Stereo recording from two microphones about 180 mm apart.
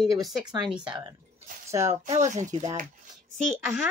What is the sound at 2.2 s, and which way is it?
Speech, 40° right (ahead or behind).